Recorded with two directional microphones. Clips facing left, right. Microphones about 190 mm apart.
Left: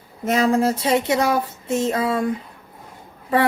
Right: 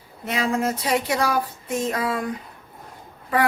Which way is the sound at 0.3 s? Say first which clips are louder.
Left 6 dB; 40° left (ahead or behind).